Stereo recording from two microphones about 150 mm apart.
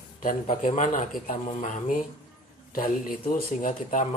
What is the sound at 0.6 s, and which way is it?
A man's voice, 55° left (ahead or behind).